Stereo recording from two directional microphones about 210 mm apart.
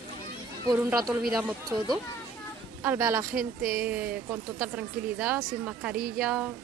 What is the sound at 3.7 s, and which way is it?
Speech, 5° right (ahead or behind).